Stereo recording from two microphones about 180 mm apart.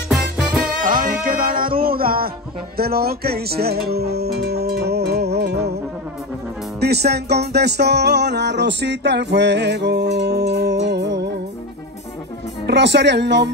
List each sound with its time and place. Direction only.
0.1 s music: 5° right (ahead or behind)
0.8 s music: 50° right (ahead or behind); by 5.7 s 65° right (ahead or behind)
6.8 s music: 65° right (ahead or behind)
12.6 s music: 70° right (ahead or behind)